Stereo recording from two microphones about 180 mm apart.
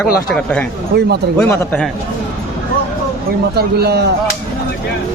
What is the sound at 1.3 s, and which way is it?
Speech, 5° left (ahead or behind).